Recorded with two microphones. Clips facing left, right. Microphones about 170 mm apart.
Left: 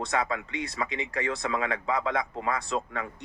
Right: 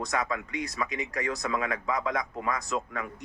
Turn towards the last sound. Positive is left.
turn(degrees=30)  # may be behind; listen again after turning